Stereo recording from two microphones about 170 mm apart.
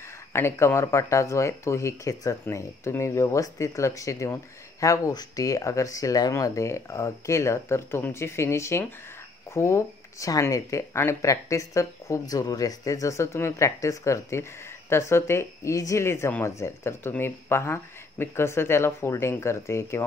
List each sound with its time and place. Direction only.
0.3 s speech: 15° left (ahead or behind)